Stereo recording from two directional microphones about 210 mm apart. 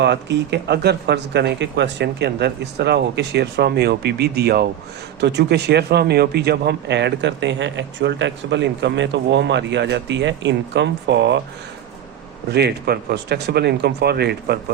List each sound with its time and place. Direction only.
0.0 s speech: 55° right (ahead or behind)
12.5 s speech: 50° right (ahead or behind)